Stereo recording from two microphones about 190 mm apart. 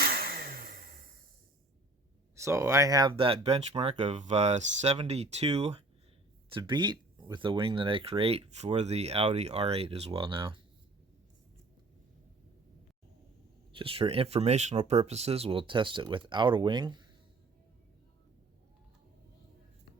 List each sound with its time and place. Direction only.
0.0 s a sound: 50° right (ahead or behind)
2.3 s speech: 15° right (ahead or behind); by 5.8 s 35° right (ahead or behind)
6.5 s speech: 25° right (ahead or behind)
13.7 s speech: 30° right (ahead or behind)